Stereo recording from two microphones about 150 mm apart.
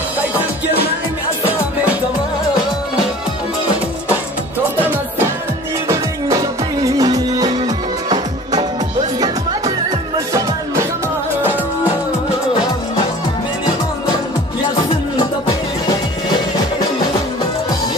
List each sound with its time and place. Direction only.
4.7 s music: 15° right (ahead or behind)
6.8 s music: 25° right (ahead or behind)